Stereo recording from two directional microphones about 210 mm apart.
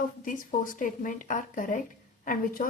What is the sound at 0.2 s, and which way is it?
Speech, 40° left (ahead or behind).